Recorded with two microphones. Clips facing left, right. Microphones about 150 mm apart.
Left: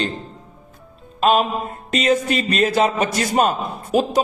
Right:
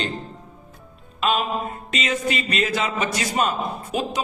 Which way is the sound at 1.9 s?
40° left (ahead or behind).